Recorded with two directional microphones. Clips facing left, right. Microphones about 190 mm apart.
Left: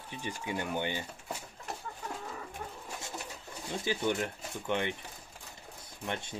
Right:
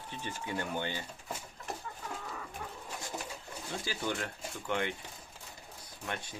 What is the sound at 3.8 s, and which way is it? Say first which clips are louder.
Speech: left 6 dB; 20° left (ahead or behind).